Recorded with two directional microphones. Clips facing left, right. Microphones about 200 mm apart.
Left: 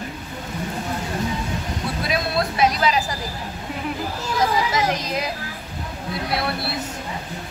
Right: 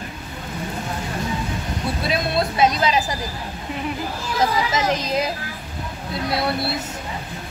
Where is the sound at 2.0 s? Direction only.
25° right (ahead or behind).